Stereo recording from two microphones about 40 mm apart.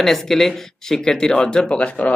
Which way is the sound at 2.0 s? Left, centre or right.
Left.